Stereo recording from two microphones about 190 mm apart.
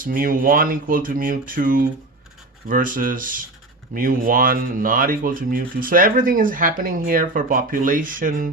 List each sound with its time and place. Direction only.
0.0 s speech: 45° right (ahead or behind)